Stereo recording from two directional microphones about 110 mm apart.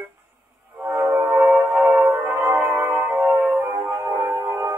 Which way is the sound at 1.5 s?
10° right (ahead or behind).